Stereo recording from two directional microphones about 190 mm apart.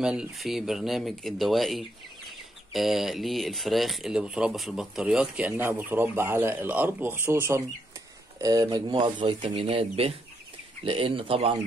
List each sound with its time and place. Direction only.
0.0 s speech: 5° right (ahead or behind); by 11.5 s 30° right (ahead or behind)